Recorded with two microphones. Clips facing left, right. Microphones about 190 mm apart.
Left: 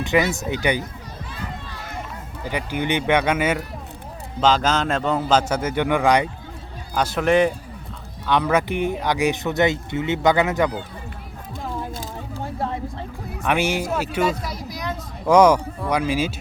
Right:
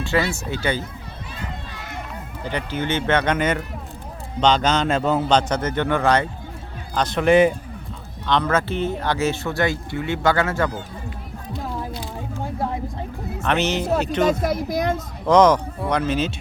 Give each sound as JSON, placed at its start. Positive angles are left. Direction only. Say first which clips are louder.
{"t": 0.0, "sound": "speech", "louder": "left 2 dB", "side_deg": 20}
{"t": 2.4, "sound": "a man's voice", "louder": "left 1 dB", "side_deg": 10}
{"t": 8.3, "sound": "speech", "louder": "left 1 dB", "side_deg": 10}
{"t": 11.5, "sound": "a sound", "louder": "even", "side_deg": 45}
{"t": 13.4, "sound": "speech", "louder": "even", "side_deg": 10}
{"t": 14.4, "sound": "a sound", "louder": "right 8 dB", "side_deg": -50}
{"t": 15.3, "sound": "speech", "louder": "even", "side_deg": 10}